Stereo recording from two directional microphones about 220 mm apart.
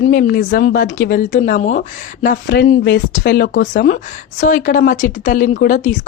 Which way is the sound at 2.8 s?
40° left (ahead or behind).